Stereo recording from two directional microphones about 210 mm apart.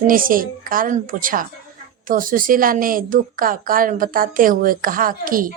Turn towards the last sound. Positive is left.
turn(degrees=-40)  # may be behind; listen again after turning